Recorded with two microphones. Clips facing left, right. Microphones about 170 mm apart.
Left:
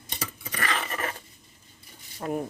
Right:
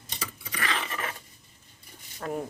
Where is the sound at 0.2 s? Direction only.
45° left (ahead or behind).